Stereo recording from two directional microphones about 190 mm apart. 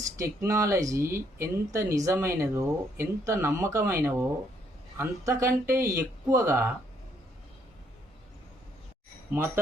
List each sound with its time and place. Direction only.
0.2 s speech: 15° right (ahead or behind)